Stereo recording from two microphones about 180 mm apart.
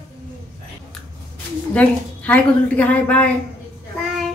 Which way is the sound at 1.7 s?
10° left (ahead or behind).